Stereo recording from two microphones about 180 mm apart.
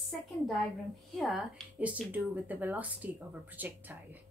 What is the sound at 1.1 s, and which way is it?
A woman's voice, centre (ahead or behind).